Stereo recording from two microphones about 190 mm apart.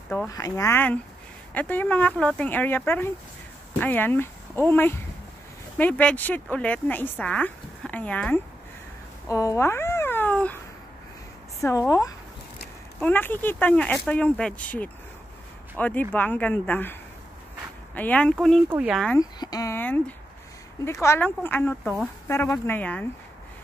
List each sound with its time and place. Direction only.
0.3 s speech: 15° left (ahead or behind)
9.3 s cat: 15° left (ahead or behind)
11.6 s speech: 15° left (ahead or behind)
13.0 s speech: 10° left (ahead or behind)
17.9 s speech: 10° left (ahead or behind)
19.1 s speech: 20° left (ahead or behind)